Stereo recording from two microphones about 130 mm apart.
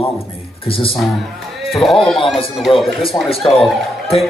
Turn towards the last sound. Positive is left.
turn(degrees=0)  # may be behind; listen again after turning